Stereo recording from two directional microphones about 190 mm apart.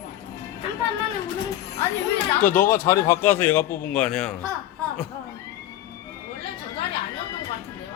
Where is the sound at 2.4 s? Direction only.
45° left (ahead or behind).